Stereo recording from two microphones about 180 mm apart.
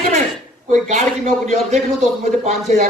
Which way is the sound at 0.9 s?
40° right (ahead or behind).